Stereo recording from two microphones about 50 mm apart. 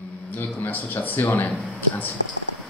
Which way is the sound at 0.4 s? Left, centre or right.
Left.